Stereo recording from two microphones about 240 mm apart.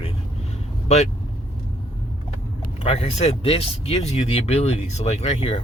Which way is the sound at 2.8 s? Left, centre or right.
Left.